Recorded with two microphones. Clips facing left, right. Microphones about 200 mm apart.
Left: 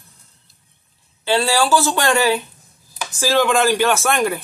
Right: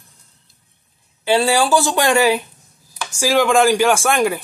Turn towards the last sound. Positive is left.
turn(degrees=-10)  # may be behind; listen again after turning